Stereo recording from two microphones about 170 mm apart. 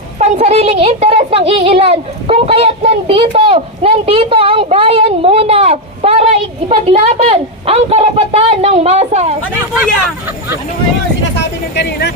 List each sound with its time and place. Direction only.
0.2 s a child's voice: 40° right (ahead or behind)
11.3 s speech: 85° left